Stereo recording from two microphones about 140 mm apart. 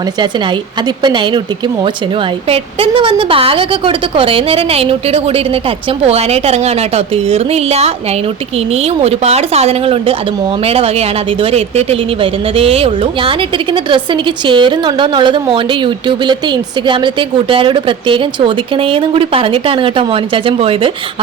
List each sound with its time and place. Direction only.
1.0 s a woman's voice: 35° right (ahead or behind)